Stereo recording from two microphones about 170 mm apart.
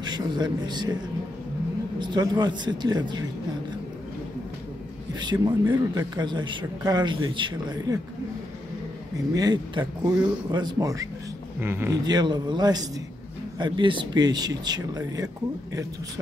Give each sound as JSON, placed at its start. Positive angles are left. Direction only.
{"t": 0.0, "sound": "a man's voice", "side_deg": -25}
{"t": 2.0, "sound": "speech", "side_deg": -25}
{"t": 5.2, "sound": "speech", "side_deg": -25}
{"t": 9.3, "sound": "speech", "side_deg": -20}